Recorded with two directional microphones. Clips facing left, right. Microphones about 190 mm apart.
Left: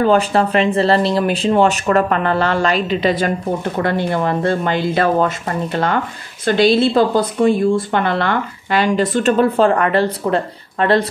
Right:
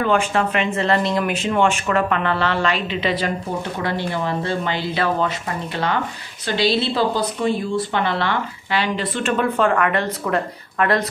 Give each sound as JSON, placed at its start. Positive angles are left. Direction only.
{"t": 0.0, "sound": "speech", "side_deg": 35}